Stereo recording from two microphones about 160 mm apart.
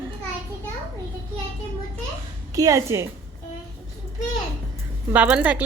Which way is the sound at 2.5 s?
20° right (ahead or behind).